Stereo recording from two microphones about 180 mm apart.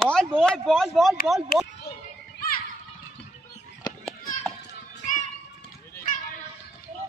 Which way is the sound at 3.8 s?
20° left (ahead or behind).